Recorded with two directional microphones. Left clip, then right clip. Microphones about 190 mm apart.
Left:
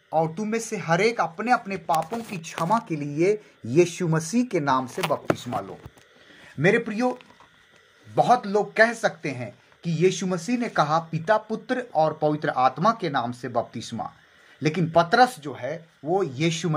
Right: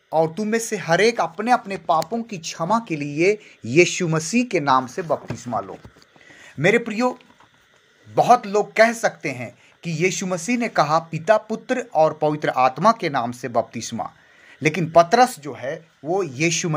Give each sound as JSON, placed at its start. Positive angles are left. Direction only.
{"t": 0.1, "sound": "speech", "side_deg": -40}
{"t": 2.6, "sound": "speech", "side_deg": -25}
{"t": 6.6, "sound": "speech", "side_deg": -40}
{"t": 8.1, "sound": "speech", "side_deg": -35}